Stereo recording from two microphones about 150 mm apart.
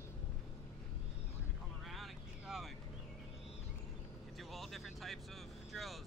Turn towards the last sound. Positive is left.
turn(degrees=0)  # may be behind; listen again after turning